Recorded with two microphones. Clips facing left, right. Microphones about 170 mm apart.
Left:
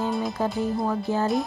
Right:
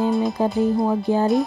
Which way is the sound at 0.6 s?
20° right (ahead or behind).